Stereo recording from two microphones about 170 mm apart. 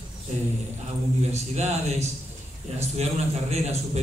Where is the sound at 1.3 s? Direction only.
40° right (ahead or behind).